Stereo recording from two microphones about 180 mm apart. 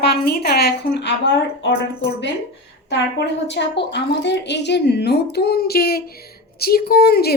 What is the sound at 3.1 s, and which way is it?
A woman's voice, 75° left (ahead or behind).